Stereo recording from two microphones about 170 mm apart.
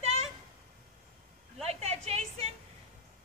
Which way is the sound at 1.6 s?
40° right (ahead or behind).